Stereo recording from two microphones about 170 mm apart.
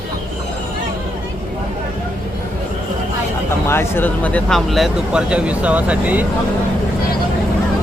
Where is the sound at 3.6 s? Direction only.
15° left (ahead or behind); by 6.3 s 10° right (ahead or behind).